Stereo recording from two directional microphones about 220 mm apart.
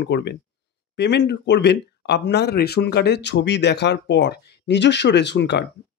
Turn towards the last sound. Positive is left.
turn(degrees=50)  # may be behind; listen again after turning